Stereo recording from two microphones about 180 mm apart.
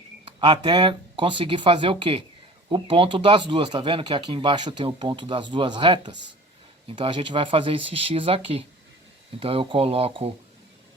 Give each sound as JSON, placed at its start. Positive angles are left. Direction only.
{"t": 0.3, "sound": "speech", "side_deg": -25}